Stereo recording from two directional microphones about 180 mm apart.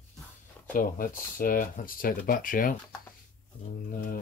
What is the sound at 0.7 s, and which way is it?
Speech, 50° left (ahead or behind).